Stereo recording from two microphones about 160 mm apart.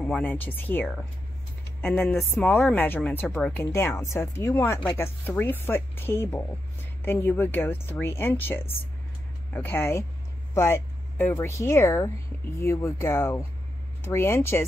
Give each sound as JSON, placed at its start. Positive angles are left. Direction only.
{"t": 0.0, "sound": "speech", "side_deg": 10}